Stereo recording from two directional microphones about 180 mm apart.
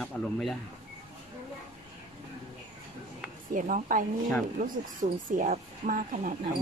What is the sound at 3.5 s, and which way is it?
A woman's voice, 50° right (ahead or behind).